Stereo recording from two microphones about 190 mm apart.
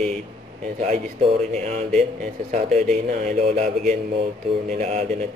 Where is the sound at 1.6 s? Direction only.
35° right (ahead or behind).